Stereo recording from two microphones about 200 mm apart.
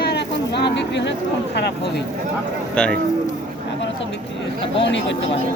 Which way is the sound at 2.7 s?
5° left (ahead or behind).